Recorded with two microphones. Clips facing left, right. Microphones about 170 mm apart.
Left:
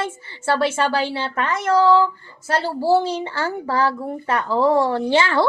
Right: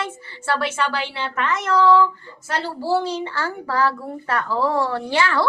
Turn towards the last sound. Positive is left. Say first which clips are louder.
# left 3 dB
turn(degrees=25)  # may be behind; listen again after turning